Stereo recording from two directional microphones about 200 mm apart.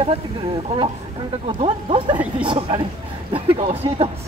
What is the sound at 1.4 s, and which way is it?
Speech, 25° right (ahead or behind).